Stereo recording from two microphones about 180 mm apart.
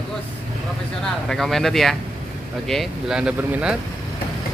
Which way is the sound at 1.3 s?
Centre (ahead or behind).